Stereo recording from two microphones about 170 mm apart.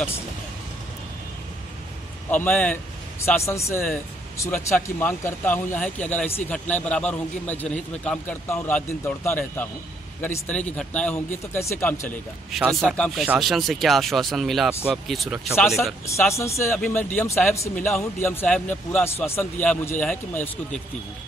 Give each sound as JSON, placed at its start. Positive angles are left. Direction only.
{"t": 2.3, "sound": "speech", "side_deg": 10}
{"t": 15.5, "sound": "speech", "side_deg": 15}